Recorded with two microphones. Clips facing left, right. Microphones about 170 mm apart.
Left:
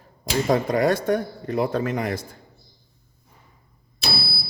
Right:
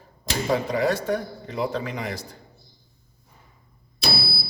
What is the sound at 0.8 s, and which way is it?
Speech, 55° left (ahead or behind).